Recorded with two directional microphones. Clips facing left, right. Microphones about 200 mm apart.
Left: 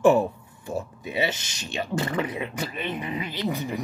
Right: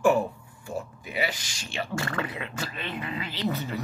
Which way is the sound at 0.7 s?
25° left (ahead or behind).